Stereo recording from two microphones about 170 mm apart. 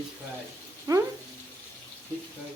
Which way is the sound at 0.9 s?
20° right (ahead or behind).